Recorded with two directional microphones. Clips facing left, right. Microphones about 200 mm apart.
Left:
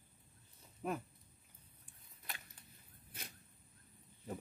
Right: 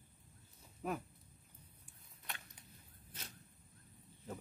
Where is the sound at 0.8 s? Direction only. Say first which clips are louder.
Even; 5° right (ahead or behind).